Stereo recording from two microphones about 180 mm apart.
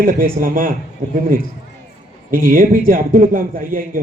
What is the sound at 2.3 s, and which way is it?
A man's voice, 50° right (ahead or behind).